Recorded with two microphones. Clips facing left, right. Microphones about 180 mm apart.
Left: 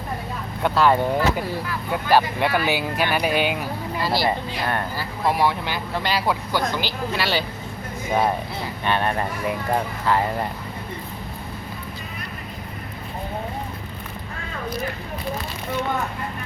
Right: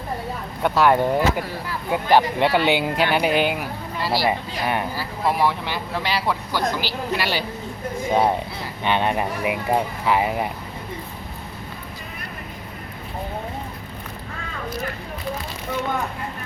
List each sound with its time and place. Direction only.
0.6 s speech: 10° right (ahead or behind)
5.3 s speech: centre (ahead or behind)